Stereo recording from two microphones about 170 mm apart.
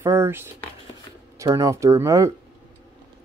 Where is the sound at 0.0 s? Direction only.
15° right (ahead or behind).